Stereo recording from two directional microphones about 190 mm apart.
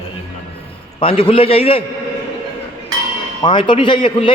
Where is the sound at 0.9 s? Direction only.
30° left (ahead or behind).